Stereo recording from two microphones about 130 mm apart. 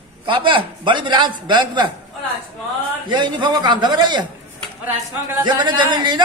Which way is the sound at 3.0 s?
35° right (ahead or behind).